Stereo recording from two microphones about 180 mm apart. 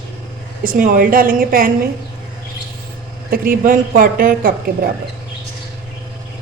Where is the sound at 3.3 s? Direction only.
50° right (ahead or behind).